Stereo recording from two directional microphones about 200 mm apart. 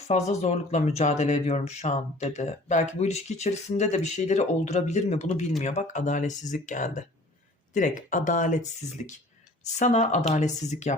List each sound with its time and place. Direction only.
0.1 s speech: 35° left (ahead or behind)